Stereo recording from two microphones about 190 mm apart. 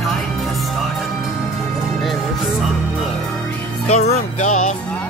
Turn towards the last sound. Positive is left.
turn(degrees=35)  # may be behind; listen again after turning